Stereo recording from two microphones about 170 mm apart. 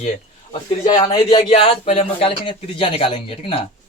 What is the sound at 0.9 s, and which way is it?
Speech, 30° left (ahead or behind).